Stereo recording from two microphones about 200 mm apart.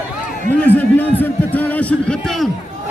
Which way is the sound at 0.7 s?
10° left (ahead or behind).